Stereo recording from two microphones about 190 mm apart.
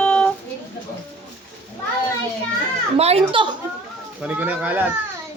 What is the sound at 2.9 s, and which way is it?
Speech, 30° right (ahead or behind).